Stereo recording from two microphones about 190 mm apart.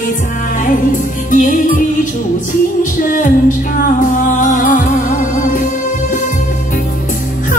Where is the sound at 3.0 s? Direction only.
45° left (ahead or behind).